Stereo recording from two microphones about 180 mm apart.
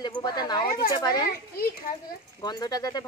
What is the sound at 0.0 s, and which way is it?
Speech, 25° left (ahead or behind).